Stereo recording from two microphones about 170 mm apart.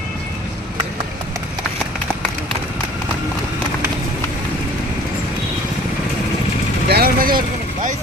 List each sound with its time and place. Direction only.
6.8 s vehicle: 65° right (ahead or behind)